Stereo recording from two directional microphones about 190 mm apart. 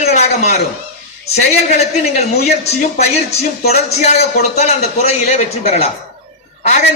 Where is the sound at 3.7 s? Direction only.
35° left (ahead or behind).